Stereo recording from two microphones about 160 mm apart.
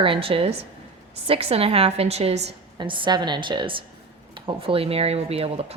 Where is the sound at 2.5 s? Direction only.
30° right (ahead or behind).